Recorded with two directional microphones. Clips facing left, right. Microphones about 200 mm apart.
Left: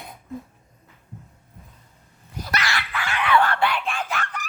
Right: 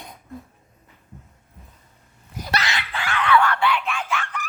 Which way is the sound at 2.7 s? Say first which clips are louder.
Left 1 dB; 20° right (ahead or behind).